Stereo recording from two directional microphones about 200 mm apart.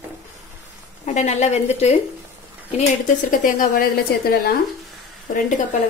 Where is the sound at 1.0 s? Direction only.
35° left (ahead or behind).